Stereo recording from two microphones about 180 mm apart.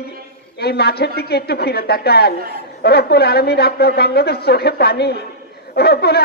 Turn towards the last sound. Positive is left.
turn(degrees=60)  # may be behind; listen again after turning